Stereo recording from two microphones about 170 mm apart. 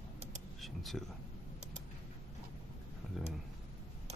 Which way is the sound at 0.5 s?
Centre (ahead or behind).